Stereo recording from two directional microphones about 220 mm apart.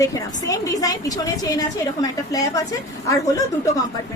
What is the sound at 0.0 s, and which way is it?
A woman's voice, 15° left (ahead or behind).